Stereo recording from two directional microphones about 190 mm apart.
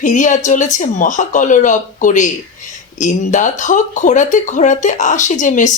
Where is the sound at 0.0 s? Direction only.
40° left (ahead or behind).